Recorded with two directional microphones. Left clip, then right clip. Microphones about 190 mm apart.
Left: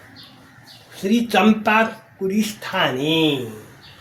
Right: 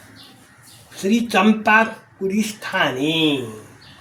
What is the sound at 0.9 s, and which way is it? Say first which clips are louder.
Speech: even; 10° left (ahead or behind).